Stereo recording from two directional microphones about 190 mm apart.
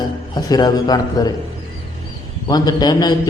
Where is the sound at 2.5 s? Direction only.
20° left (ahead or behind).